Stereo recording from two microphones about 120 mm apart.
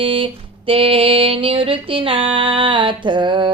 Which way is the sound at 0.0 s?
50° right (ahead or behind).